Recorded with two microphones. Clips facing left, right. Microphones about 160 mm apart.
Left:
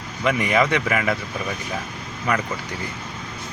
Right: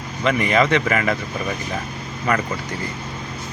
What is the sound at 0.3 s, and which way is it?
Speech, 10° left (ahead or behind).